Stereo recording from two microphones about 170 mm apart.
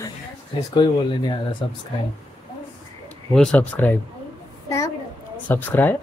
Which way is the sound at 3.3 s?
5° left (ahead or behind).